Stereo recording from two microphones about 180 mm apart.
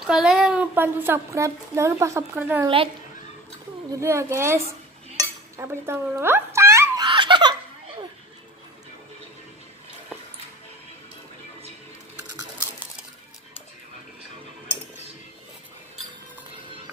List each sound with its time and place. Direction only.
0.0 s a woman's voice: centre (ahead or behind)
3.9 s a woman's voice: 15° right (ahead or behind)
5.6 s speech: 15° right (ahead or behind)
7.1 s laughter: 25° right (ahead or behind)